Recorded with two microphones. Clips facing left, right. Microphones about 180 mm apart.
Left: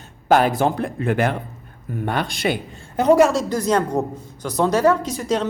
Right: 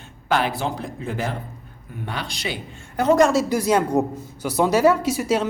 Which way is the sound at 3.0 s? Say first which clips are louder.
Left 3 dB; 15° left (ahead or behind).